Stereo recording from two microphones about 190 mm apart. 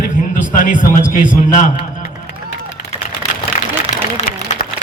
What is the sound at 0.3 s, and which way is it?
A man's voice, 45° left (ahead or behind).